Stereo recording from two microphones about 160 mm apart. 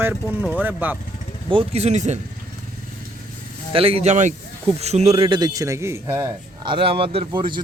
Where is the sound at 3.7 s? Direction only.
35° right (ahead or behind); by 6.2 s 15° right (ahead or behind).